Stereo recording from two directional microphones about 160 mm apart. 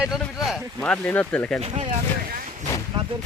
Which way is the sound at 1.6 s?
40° right (ahead or behind).